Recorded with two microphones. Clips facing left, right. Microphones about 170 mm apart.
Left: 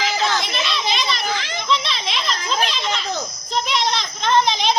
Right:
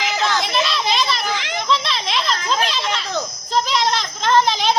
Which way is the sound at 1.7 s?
Centre (ahead or behind).